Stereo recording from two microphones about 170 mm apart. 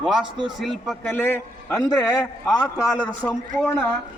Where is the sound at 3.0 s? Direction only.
5° left (ahead or behind).